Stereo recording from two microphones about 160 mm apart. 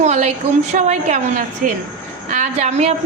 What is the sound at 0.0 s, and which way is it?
A woman's voice, 45° right (ahead or behind).